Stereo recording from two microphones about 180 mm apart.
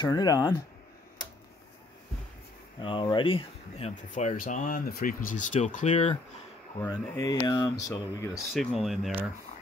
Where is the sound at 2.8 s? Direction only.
25° left (ahead or behind).